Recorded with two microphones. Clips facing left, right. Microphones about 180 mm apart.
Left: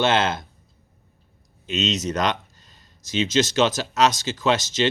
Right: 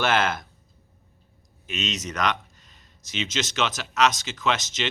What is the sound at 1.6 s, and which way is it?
Speech, 25° left (ahead or behind).